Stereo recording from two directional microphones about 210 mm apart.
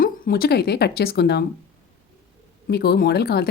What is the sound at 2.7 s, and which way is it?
Speech, 50° left (ahead or behind).